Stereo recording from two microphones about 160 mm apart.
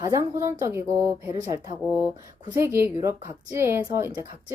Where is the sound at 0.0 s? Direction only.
20° right (ahead or behind).